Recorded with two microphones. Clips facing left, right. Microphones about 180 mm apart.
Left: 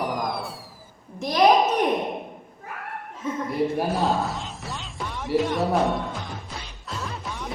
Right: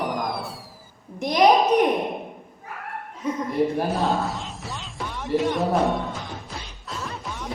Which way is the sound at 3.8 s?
Centre (ahead or behind).